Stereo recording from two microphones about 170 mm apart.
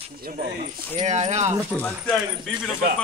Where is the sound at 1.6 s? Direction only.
10° left (ahead or behind).